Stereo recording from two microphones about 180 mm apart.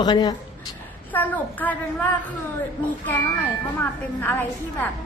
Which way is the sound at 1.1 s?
10° left (ahead or behind).